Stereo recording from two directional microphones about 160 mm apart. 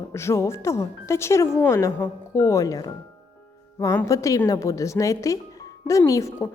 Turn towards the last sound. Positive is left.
turn(degrees=20)  # may be behind; listen again after turning